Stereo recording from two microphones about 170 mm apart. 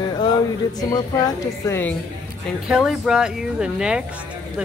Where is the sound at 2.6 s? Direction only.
Centre (ahead or behind).